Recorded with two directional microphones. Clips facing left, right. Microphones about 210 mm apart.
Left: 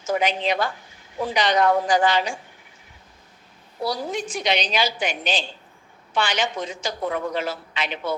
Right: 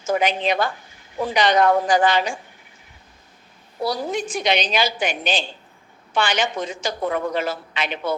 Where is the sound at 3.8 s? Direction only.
50° right (ahead or behind).